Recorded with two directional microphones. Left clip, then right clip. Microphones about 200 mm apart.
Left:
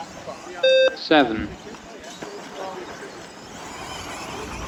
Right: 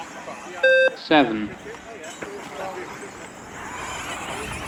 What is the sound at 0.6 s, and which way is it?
Beep, 50° right (ahead or behind).